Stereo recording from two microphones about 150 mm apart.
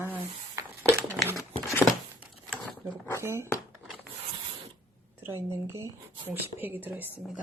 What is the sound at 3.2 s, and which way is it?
Speech, 15° right (ahead or behind).